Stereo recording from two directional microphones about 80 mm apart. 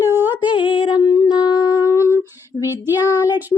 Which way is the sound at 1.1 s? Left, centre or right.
Left.